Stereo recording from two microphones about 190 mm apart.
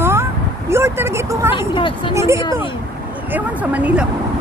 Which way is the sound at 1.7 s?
25° left (ahead or behind).